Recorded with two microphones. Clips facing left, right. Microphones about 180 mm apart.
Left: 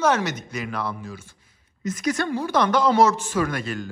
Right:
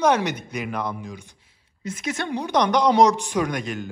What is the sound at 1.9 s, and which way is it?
A man's voice, 25° right (ahead or behind).